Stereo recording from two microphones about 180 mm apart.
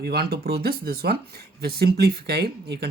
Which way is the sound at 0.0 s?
60° right (ahead or behind).